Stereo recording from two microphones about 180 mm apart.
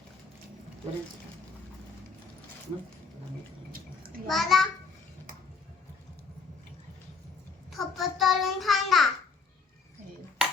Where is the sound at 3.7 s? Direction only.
55° right (ahead or behind).